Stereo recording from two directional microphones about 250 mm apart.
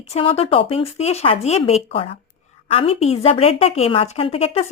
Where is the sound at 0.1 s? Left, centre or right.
Left.